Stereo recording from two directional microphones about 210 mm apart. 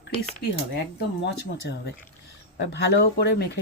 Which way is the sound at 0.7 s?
50° left (ahead or behind).